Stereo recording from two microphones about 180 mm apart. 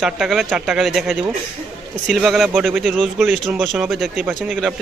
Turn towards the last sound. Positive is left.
turn(degrees=-5)  # may be behind; listen again after turning